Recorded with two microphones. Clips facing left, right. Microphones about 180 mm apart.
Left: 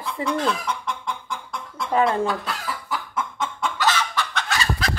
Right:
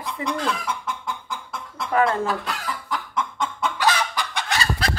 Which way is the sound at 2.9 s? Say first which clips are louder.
Right 1 dB; 5° left (ahead or behind).